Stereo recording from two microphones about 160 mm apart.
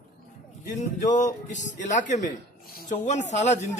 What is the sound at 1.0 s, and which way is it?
A man's voice, 50° left (ahead or behind).